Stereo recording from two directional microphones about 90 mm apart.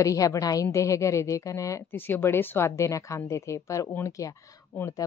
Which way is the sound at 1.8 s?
25° left (ahead or behind).